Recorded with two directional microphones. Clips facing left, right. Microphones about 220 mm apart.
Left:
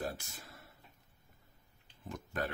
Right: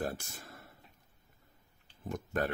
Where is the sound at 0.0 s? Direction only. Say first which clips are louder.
Right 3 dB; 50° right (ahead or behind).